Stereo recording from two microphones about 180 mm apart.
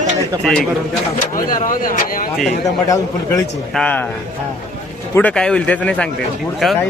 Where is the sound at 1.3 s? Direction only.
50° left (ahead or behind).